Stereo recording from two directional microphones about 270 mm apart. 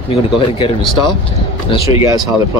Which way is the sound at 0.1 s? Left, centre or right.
Centre.